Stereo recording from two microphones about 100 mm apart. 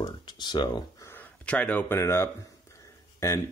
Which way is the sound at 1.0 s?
20° left (ahead or behind).